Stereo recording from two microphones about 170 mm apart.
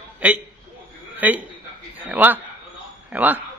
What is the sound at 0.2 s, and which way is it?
Speech, 10° right (ahead or behind).